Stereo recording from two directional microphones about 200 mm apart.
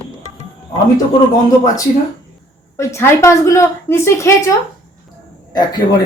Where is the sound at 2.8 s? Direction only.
15° left (ahead or behind).